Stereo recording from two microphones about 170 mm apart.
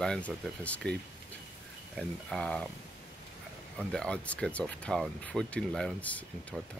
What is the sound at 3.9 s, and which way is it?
Speech, 5° left (ahead or behind).